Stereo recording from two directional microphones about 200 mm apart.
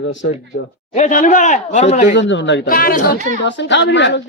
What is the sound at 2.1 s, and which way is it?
Speech, 65° left (ahead or behind).